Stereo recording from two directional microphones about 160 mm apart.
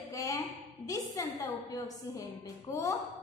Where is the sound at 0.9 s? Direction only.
20° left (ahead or behind).